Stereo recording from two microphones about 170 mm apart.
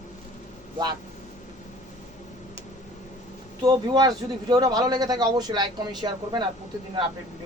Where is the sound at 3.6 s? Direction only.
25° right (ahead or behind).